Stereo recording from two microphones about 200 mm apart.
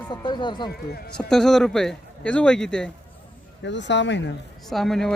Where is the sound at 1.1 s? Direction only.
5° left (ahead or behind).